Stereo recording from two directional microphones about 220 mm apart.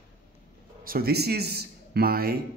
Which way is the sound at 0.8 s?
45° right (ahead or behind).